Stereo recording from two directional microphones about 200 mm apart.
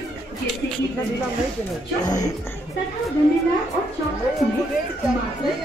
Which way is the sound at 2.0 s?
20° left (ahead or behind).